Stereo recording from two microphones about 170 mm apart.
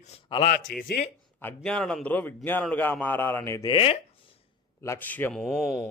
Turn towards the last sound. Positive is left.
turn(degrees=0)  # may be behind; listen again after turning